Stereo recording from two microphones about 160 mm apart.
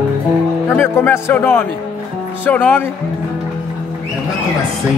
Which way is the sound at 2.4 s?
10° left (ahead or behind).